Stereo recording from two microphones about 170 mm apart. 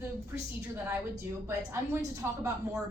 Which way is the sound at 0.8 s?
15° right (ahead or behind).